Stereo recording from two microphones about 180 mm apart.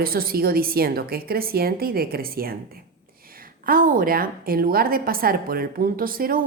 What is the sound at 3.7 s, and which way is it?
A woman's voice, 50° right (ahead or behind).